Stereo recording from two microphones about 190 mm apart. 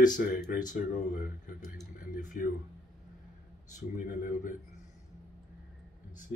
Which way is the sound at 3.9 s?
45° left (ahead or behind).